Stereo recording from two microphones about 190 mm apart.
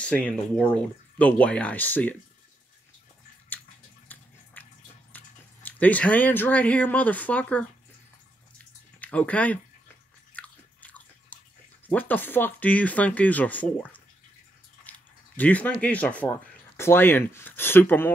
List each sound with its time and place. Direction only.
0.0 s speech: 5° left (ahead or behind)
4.1 s a sound: 10° left (ahead or behind)
4.6 s water: 10° left (ahead or behind)
5.1 s speech: 10° left (ahead or behind)
9.0 s speech: 5° left (ahead or behind)
10.3 s biting: 5° left (ahead or behind)
11.9 s speech: 10° left (ahead or behind)